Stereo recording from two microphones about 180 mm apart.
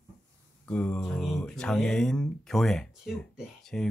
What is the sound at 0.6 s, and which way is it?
Speech, 5° left (ahead or behind).